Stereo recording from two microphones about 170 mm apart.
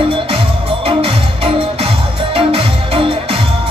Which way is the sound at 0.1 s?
30° right (ahead or behind).